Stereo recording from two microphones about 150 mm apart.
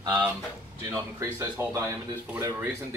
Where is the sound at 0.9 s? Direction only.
20° right (ahead or behind).